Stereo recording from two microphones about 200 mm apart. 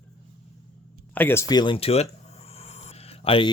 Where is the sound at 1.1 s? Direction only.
10° left (ahead or behind).